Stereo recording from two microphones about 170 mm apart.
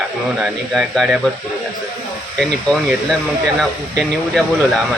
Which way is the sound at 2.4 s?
5° left (ahead or behind).